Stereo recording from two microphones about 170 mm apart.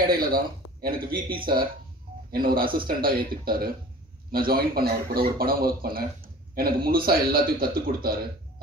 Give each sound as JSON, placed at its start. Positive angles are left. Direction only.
{"t": 0.1, "sound": "a man's voice", "side_deg": -60}